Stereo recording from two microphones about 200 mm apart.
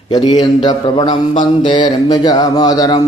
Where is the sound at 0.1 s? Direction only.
20° left (ahead or behind).